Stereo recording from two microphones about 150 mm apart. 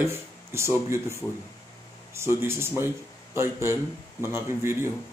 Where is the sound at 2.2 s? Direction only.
15° right (ahead or behind).